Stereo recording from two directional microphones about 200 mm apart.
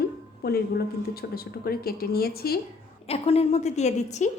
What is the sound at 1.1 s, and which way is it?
A woman's voice, 50° left (ahead or behind).